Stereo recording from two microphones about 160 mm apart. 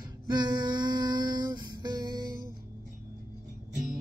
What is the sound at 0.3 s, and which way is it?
Humming, 25° right (ahead or behind).